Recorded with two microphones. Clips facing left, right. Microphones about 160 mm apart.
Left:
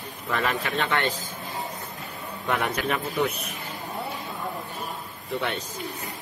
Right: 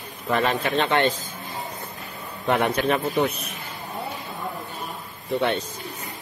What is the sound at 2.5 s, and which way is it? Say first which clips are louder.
Speech: right 5 dB; 25° right (ahead or behind).